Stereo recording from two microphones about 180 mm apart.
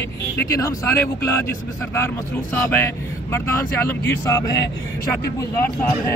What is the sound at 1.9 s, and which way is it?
Speech, 15° left (ahead or behind).